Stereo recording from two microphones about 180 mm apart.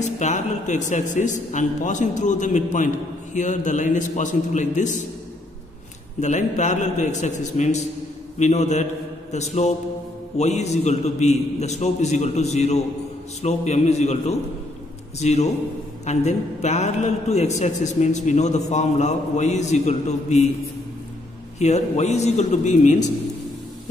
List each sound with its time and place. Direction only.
0.0 s a woman's voice: 40° left (ahead or behind)
6.2 s a man's voice: 40° left (ahead or behind)
21.5 s a man's voice: 40° left (ahead or behind)